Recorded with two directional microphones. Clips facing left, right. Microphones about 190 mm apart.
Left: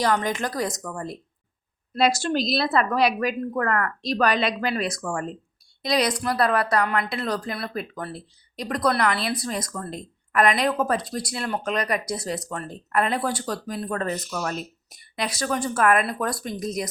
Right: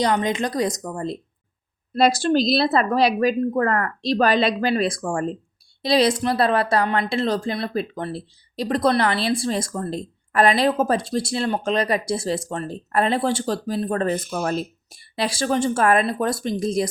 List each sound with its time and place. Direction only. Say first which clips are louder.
0.0 s a woman's voice: right 3 dB; 20° right (ahead or behind)
2.0 s a woman's voice: right 4 dB; 35° right (ahead or behind)
14.2 s speech: right 4 dB; 55° right (ahead or behind)
14.4 s a woman's voice: right 5 dB; 30° right (ahead or behind)